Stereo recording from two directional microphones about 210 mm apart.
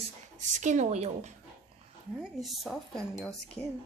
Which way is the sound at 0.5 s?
35° right (ahead or behind).